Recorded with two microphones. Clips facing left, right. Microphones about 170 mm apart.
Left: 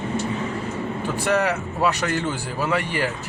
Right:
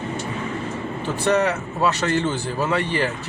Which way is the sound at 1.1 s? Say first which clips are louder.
Right 2 dB; 10° left (ahead or behind).